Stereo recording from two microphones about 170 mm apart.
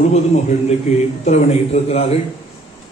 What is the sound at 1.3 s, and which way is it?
Speech, 40° left (ahead or behind).